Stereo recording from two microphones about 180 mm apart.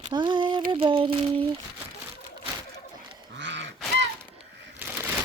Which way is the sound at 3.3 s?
80° right.